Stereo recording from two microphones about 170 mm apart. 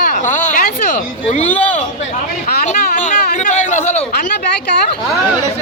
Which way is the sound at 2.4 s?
50° left (ahead or behind).